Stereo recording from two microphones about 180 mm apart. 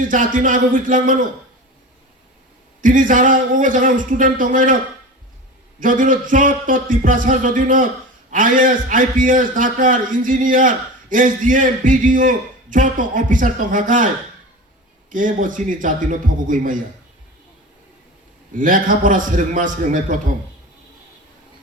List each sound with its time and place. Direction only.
0.1 s a man's voice: 45° right (ahead or behind)
2.8 s a man's voice: 45° right (ahead or behind)
5.8 s a man's voice: 45° right (ahead or behind)
15.1 s a man's voice: 50° right (ahead or behind)
18.5 s a man's voice: 50° right (ahead or behind)